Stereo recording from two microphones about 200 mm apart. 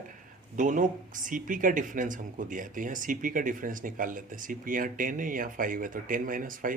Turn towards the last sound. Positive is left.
turn(degrees=-45)  # may be behind; listen again after turning